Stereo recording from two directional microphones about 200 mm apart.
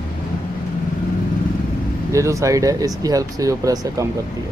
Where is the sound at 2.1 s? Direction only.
15° right (ahead or behind).